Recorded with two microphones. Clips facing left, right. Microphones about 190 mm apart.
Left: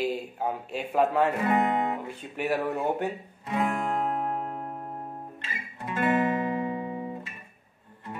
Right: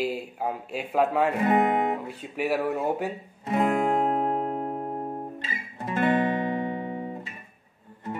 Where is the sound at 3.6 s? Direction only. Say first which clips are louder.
Right 5 dB; 40° right (ahead or behind).